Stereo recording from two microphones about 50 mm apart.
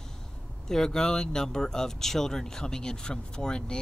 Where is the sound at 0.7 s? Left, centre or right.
Centre.